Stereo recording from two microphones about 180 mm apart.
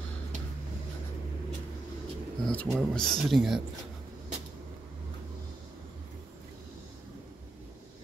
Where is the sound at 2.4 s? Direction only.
5° left (ahead or behind).